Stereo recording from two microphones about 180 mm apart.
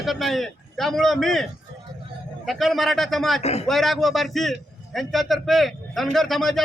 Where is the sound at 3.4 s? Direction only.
35° left (ahead or behind).